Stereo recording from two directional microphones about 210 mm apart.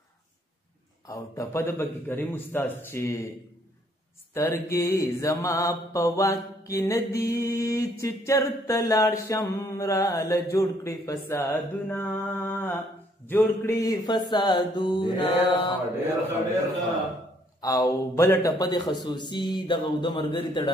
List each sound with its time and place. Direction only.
1.0 s mantra: 15° left (ahead or behind)
4.3 s mantra: 15° left (ahead or behind)
13.3 s a man's voice: 15° left (ahead or behind)
17.6 s a man's voice: 15° left (ahead or behind)